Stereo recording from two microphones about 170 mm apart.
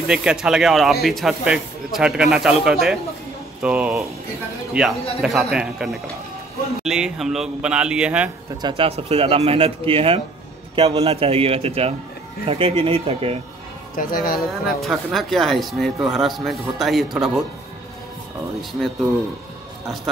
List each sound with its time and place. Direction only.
0.1 s speech: 5° right (ahead or behind)
8.6 s speech: 30° right (ahead or behind)
13.9 s speech: 60° left (ahead or behind)
14.5 s speech: centre (ahead or behind)
18.6 s speech: centre (ahead or behind)